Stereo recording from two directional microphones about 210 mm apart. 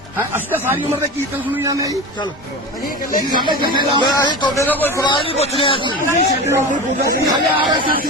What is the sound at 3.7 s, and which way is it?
Speech, 20° right (ahead or behind).